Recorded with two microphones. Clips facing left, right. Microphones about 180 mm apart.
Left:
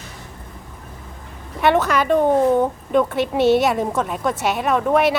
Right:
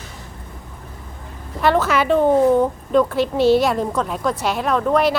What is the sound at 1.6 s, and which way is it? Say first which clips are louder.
Speech: even; centre (ahead or behind).